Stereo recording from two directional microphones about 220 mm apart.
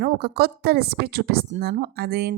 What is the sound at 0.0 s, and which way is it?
A woman's voice, 45° right (ahead or behind).